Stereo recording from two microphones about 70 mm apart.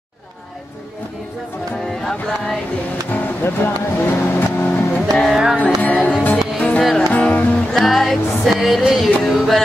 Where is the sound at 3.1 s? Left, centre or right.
Left.